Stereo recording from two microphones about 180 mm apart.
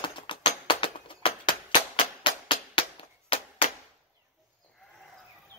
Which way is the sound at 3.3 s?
30° left (ahead or behind).